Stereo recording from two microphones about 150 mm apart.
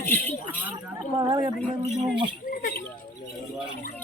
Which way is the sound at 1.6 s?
15° left (ahead or behind).